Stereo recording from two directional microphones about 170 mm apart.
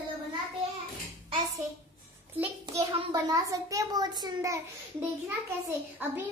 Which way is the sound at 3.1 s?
20° right (ahead or behind).